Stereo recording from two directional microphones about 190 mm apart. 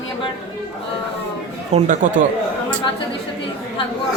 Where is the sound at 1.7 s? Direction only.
40° right (ahead or behind).